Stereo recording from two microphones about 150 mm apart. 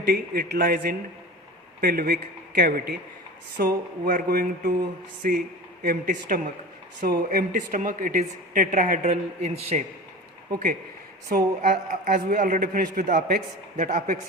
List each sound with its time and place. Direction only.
0.1 s a man's voice: 90° right
3.6 s a man's voice: 75° right (ahead or behind)
7.0 s a woman's voice: 80° right; by 9.8 s 45° right (ahead or behind)
11.3 s a man's voice: 75° right (ahead or behind)